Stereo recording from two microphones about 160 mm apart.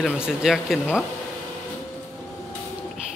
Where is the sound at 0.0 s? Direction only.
5° right (ahead or behind).